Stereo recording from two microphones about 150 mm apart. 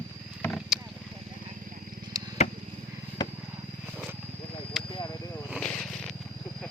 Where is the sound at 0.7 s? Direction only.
5° right (ahead or behind).